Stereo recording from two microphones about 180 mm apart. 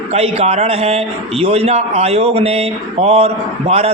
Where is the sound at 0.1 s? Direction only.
35° right (ahead or behind).